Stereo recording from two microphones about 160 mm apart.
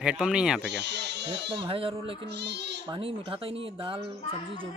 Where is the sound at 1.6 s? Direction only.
35° right (ahead or behind).